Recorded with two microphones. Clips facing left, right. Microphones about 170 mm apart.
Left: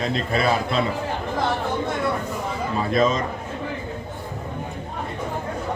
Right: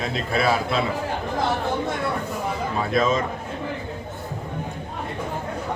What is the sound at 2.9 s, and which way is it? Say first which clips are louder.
Speech: left 1 dB; centre (ahead or behind).